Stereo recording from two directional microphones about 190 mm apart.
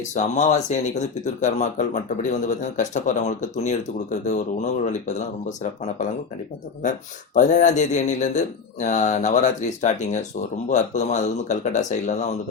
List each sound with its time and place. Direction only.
0.1 s speech: 40° left (ahead or behind)
7.3 s speech: 40° left (ahead or behind)